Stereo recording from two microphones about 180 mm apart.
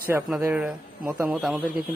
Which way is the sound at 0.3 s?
5° right (ahead or behind).